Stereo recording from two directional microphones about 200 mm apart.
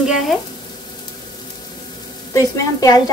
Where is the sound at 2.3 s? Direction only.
15° left (ahead or behind).